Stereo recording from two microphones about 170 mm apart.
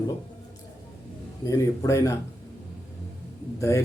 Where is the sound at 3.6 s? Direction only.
20° left (ahead or behind).